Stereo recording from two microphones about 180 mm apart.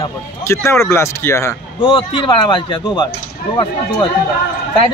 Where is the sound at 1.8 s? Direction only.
30° left (ahead or behind).